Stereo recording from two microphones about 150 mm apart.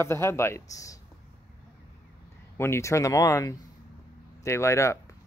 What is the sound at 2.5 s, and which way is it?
Speech, 15° left (ahead or behind).